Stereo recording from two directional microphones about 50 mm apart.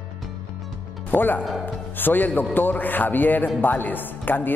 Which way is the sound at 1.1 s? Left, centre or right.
Left.